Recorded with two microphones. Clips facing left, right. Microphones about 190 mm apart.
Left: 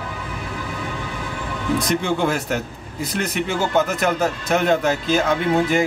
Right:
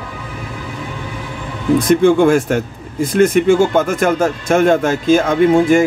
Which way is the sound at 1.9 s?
50° right (ahead or behind).